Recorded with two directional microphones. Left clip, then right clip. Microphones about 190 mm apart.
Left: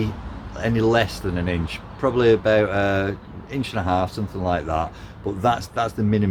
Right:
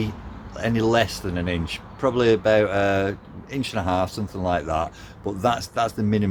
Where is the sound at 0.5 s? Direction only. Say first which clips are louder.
Left 1 dB; 25° right (ahead or behind).